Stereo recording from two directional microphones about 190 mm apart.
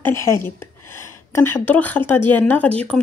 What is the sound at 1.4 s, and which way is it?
Speech, 10° left (ahead or behind).